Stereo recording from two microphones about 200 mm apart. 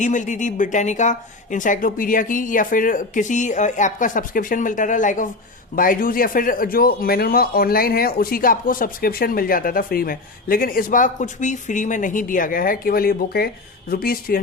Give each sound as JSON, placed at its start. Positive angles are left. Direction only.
{"t": 0.0, "sound": "a man's voice", "side_deg": 40}